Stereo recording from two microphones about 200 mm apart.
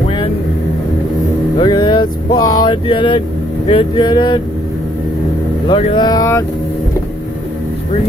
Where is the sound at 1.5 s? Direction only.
20° left (ahead or behind).